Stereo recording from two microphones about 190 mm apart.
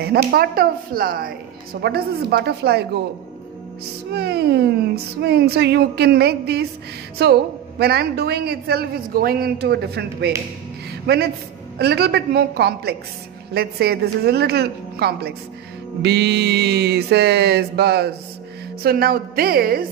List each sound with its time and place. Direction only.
0.0 s a woman's voice: 55° right (ahead or behind)
4.1 s a woman's voice: 60° right (ahead or behind)